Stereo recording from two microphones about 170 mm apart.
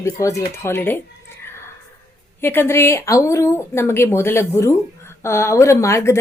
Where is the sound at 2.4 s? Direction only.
15° left (ahead or behind).